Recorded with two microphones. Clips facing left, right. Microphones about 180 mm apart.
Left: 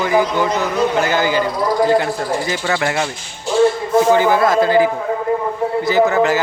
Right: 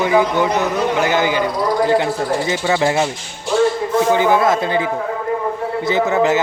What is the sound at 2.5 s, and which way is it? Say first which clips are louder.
Speech: right 3 dB; 20° right (ahead or behind).